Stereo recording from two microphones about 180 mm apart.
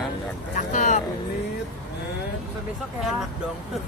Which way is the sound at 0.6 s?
45° left (ahead or behind).